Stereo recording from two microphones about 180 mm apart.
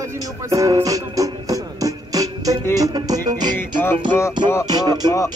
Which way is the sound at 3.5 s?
10° left (ahead or behind).